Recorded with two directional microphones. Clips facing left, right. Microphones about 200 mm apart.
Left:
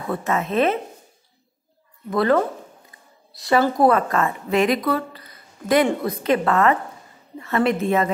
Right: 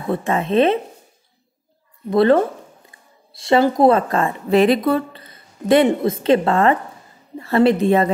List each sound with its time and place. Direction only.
0.1 s speech: 30° right (ahead or behind)
2.0 s a woman's voice: 30° right (ahead or behind)